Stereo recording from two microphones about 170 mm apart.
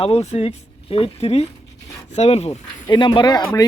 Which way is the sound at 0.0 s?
40° left (ahead or behind).